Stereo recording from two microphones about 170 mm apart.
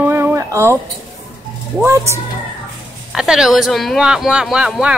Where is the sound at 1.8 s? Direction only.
15° right (ahead or behind).